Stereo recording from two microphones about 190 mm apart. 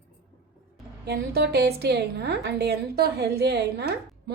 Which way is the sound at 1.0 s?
60° right (ahead or behind).